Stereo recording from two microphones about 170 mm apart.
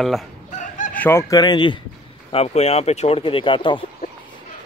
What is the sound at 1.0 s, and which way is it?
Speech, 15° left (ahead or behind).